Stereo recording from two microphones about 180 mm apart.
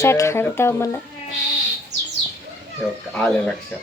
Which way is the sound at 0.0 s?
15° left (ahead or behind).